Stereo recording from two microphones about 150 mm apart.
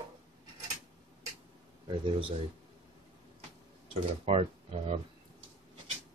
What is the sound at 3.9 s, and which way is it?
Speech, 40° right (ahead or behind).